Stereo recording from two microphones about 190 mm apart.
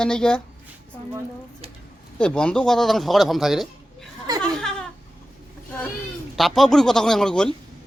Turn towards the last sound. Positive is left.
turn(degrees=5)  # may be behind; listen again after turning